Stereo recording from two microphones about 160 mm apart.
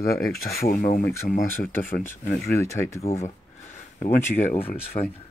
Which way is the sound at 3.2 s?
45° left (ahead or behind).